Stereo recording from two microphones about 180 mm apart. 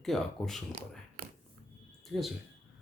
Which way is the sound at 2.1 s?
Centre (ahead or behind).